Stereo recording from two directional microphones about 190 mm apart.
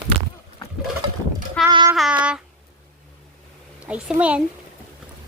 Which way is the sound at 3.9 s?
5° right (ahead or behind).